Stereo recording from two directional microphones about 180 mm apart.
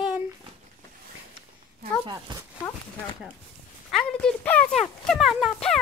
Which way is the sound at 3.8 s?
5° left (ahead or behind).